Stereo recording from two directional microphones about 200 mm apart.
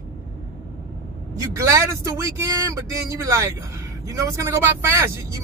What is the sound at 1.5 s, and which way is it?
Speech, 15° right (ahead or behind).